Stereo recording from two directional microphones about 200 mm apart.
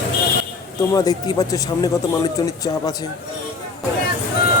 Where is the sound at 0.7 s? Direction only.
20° left (ahead or behind).